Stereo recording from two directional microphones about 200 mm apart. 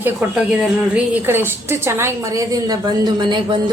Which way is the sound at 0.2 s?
5° right (ahead or behind).